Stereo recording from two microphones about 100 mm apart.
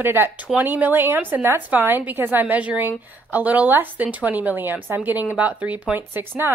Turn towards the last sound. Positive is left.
turn(degrees=-20)  # may be behind; listen again after turning